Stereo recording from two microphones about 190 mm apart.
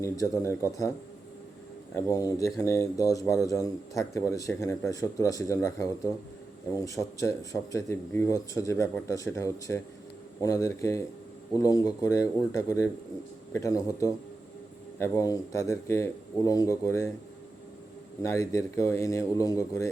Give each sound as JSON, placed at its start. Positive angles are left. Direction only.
{"t": 0.0, "sound": "speech", "side_deg": 15}
{"t": 2.0, "sound": "speech", "side_deg": 20}
{"t": 18.2, "sound": "speech", "side_deg": 15}